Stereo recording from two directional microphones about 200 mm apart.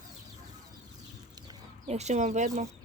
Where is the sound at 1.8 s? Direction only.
35° right (ahead or behind).